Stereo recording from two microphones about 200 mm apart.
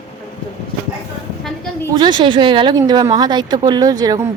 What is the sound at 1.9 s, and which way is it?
Speech, 20° right (ahead or behind).